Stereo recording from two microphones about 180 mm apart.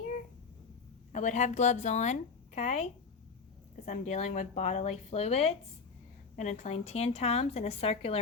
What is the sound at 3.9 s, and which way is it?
Speech, 40° left (ahead or behind).